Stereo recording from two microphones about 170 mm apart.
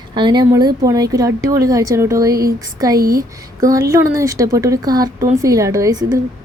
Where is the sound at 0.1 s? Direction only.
25° right (ahead or behind).